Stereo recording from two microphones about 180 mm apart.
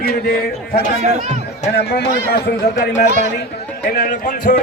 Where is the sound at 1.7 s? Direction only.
65° left (ahead or behind).